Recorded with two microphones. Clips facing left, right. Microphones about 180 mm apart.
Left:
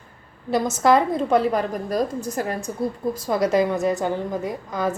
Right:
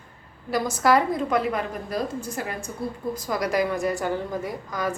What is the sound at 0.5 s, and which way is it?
A woman's voice, 25° left (ahead or behind).